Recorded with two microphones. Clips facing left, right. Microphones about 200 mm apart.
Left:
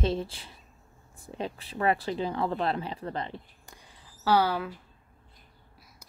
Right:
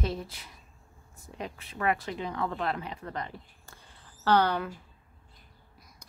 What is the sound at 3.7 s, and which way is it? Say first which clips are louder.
Mouse: left 2 dB; 15° left (ahead or behind).